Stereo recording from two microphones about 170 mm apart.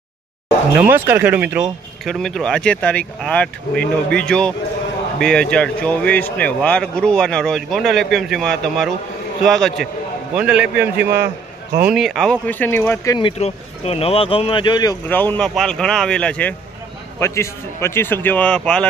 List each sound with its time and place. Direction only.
0.7 s a man's voice: 10° right (ahead or behind)
2.0 s a man's voice: centre (ahead or behind)
13.2 s speech: 35° left (ahead or behind)
15.0 s a man's voice: 10° left (ahead or behind)